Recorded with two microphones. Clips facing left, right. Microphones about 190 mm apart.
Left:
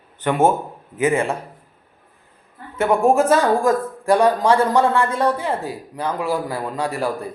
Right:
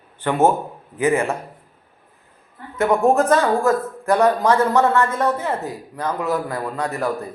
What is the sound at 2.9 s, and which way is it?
Speech, 10° left (ahead or behind).